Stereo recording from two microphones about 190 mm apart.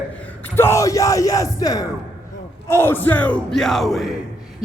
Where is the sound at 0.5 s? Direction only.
15° left (ahead or behind).